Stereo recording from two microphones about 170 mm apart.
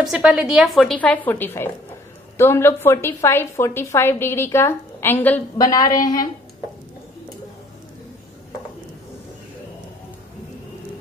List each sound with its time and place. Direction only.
0.0 s a woman's voice: 5° right (ahead or behind)
5.6 s a woman's voice: 20° left (ahead or behind)